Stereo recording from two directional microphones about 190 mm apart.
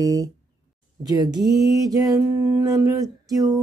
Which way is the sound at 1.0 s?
20° right (ahead or behind).